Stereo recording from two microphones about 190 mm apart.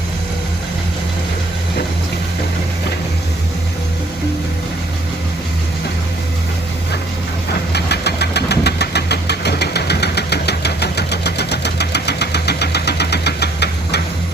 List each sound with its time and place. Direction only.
7.7 s engine: 60° left (ahead or behind)